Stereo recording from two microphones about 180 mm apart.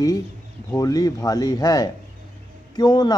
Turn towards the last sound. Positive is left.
turn(degrees=25)  # may be behind; listen again after turning